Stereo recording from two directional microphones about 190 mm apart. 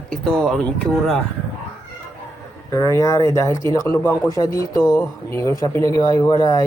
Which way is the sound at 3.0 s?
15° left (ahead or behind).